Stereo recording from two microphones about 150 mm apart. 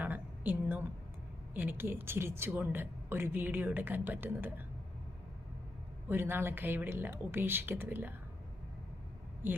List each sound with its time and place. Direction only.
0.0 s a sound: 10° right (ahead or behind)
1.5 s a woman's voice: 15° right (ahead or behind)
6.1 s a woman's voice: 15° right (ahead or behind)